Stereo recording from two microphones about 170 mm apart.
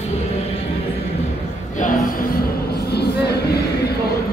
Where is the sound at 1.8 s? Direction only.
55° left (ahead or behind); by 3.4 s 70° left (ahead or behind).